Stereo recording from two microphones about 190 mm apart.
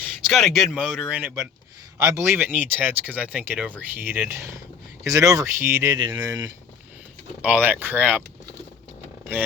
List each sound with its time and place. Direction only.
0.3 s speech: centre (ahead or behind); by 6.5 s 20° right (ahead or behind)
7.4 s speech: 10° right (ahead or behind)